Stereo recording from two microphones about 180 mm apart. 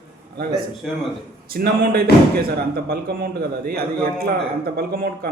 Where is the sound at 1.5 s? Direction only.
55° right (ahead or behind).